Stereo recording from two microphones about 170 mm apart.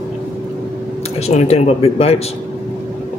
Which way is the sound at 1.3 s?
40° left (ahead or behind).